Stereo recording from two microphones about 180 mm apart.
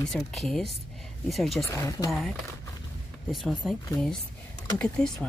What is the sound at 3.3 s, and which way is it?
Speech, centre (ahead or behind).